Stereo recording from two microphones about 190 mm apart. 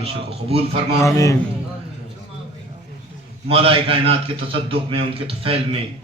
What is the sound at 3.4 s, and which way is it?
A man's voice, 30° right (ahead or behind).